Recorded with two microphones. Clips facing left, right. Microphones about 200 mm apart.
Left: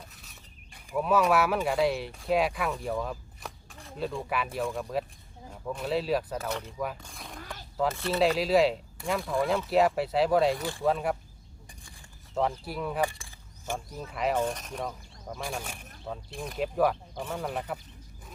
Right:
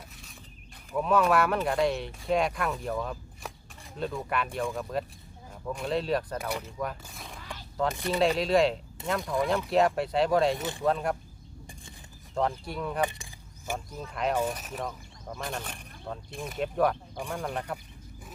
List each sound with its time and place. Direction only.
0.9 s speech: 5° left (ahead or behind)
6.4 s speech: 10° right (ahead or behind)
6.7 s speech: 5° left (ahead or behind)
7.0 s zipper: centre (ahead or behind)
7.9 s speech: 15° right (ahead or behind)
8.2 s speech: 5° left (ahead or behind)
10.6 s speech: 20° right (ahead or behind)
10.8 s speech: 5° left (ahead or behind)
12.3 s speech: 5° left (ahead or behind)
13.0 s keys jangling: 20° right (ahead or behind)
13.7 s speech: 5° left (ahead or behind)
14.3 s speech: 5° right (ahead or behind)